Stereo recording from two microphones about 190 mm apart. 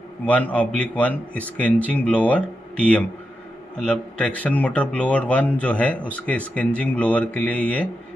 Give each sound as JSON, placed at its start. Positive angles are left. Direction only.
{"t": 0.3, "sound": "speech", "side_deg": 5}